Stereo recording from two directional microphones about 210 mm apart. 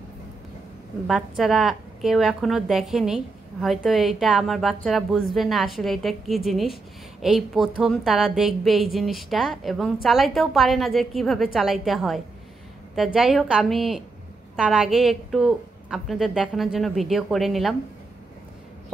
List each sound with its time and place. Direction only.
1.0 s speech: centre (ahead or behind)